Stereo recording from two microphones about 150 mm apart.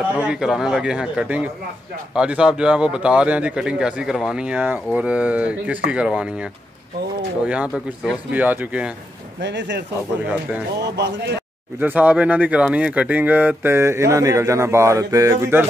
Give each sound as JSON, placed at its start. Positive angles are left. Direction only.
{"t": 0.2, "sound": "a man's voice", "side_deg": -5}
{"t": 7.4, "sound": "speech", "side_deg": -5}
{"t": 11.0, "sound": "speech", "side_deg": -90}
{"t": 11.8, "sound": "speech", "side_deg": -10}